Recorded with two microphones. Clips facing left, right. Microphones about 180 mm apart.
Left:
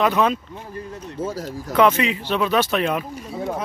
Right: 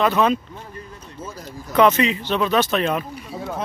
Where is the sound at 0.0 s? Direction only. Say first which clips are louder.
Even; 10° left (ahead or behind).